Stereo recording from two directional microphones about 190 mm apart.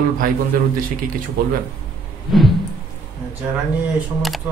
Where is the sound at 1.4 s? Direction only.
50° right (ahead or behind).